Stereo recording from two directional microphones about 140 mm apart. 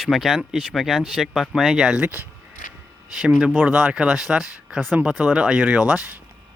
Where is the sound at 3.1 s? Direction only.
5° right (ahead or behind).